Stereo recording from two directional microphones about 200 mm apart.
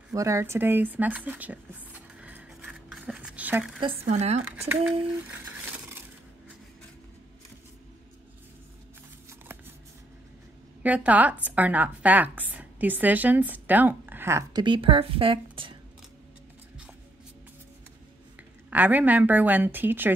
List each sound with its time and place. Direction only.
0.1 s a sound: 15° right (ahead or behind)
3.8 s speech: 30° right (ahead or behind)
4.5 s a woman's voice: 5° right (ahead or behind)
10.8 s a woman's voice: 5° right (ahead or behind); by 15.7 s 25° right (ahead or behind)
18.7 s a woman's voice: 10° right (ahead or behind)